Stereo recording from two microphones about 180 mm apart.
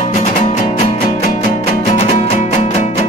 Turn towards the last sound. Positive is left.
turn(degrees=40)  # may be behind; listen again after turning